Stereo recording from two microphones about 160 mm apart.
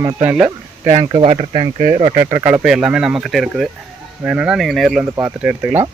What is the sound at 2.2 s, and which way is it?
Speech, 15° right (ahead or behind).